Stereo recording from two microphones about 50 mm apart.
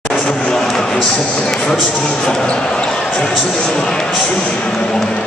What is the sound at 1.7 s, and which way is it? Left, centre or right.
Speech, centre.